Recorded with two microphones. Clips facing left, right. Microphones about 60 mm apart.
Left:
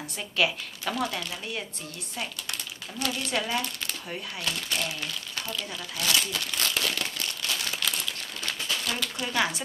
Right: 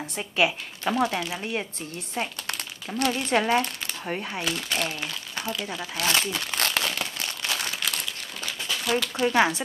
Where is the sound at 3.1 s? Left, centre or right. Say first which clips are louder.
Right 6 dB; right.